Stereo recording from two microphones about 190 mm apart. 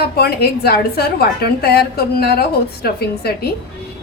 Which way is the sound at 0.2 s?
55° left (ahead or behind).